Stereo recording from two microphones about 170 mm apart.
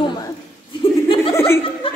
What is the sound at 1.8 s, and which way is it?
Chuckle, 30° left (ahead or behind).